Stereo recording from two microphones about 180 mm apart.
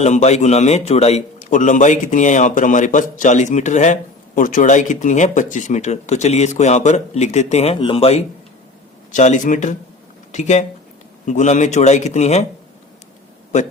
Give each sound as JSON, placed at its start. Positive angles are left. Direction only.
{"t": 0.0, "sound": "a man's voice", "side_deg": 35}
{"t": 9.1, "sound": "a man's voice", "side_deg": 45}